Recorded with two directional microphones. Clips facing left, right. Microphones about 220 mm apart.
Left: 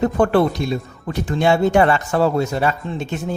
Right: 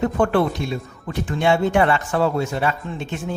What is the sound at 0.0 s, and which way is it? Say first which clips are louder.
Speech: left 3 dB; 40° left (ahead or behind).